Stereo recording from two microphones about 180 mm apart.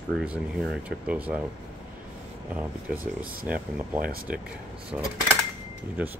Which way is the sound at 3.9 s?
50° right (ahead or behind).